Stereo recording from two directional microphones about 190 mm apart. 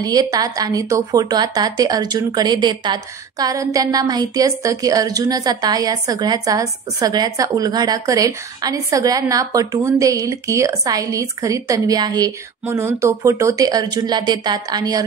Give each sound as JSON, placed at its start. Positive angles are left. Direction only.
{"t": 0.0, "sound": "a woman's voice", "side_deg": -20}